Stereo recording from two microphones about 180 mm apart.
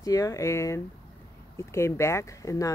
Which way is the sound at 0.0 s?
20° left (ahead or behind).